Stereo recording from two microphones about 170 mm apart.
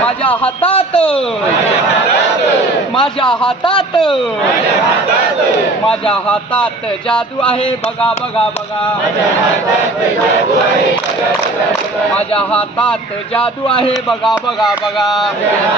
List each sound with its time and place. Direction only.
0.6 s a man's voice: 30° left (ahead or behind)
5.9 s speech: 5° left (ahead or behind)
12.4 s speech: 5° left (ahead or behind)